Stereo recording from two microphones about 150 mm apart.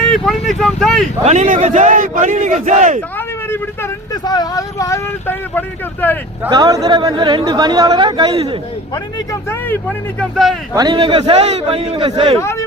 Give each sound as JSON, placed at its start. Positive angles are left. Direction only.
{"t": 0.0, "sound": "speech", "side_deg": 0}
{"t": 1.2, "sound": "a man's voice", "side_deg": -50}
{"t": 3.2, "sound": "speech", "side_deg": 15}
{"t": 6.5, "sound": "speech", "side_deg": -25}
{"t": 9.1, "sound": "speech", "side_deg": 20}
{"t": 10.8, "sound": "a man's voice", "side_deg": -30}
{"t": 12.4, "sound": "speech", "side_deg": 20}